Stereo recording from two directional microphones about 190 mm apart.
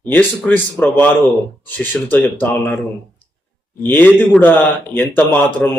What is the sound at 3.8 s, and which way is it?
Speech, 10° left (ahead or behind).